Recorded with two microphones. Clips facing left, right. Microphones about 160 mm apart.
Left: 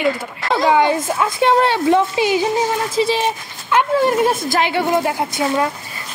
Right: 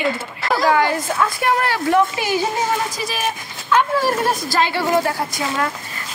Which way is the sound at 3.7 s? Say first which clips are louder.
Left 2 dB; 15° left (ahead or behind).